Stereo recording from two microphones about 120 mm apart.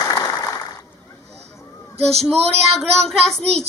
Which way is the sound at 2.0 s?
60° right (ahead or behind).